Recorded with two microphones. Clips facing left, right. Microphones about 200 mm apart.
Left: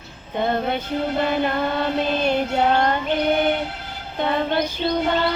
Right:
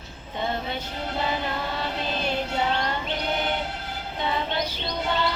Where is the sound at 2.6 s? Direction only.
55° left (ahead or behind).